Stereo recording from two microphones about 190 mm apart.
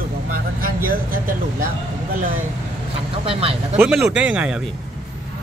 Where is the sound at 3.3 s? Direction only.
30° right (ahead or behind).